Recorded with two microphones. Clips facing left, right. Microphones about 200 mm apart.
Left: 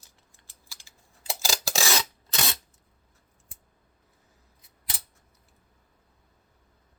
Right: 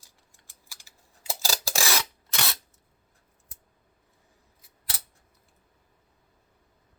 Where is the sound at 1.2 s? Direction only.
15° left (ahead or behind).